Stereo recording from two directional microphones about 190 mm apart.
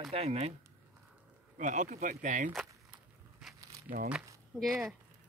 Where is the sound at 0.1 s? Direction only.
35° right (ahead or behind).